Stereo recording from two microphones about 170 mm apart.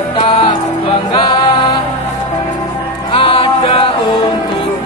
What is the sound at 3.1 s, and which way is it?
Music, 30° left (ahead or behind).